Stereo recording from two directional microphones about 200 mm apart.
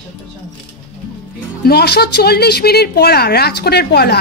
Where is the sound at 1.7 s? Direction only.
55° left (ahead or behind).